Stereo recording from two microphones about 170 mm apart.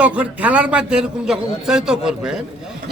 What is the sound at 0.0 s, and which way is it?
Speech, 10° right (ahead or behind).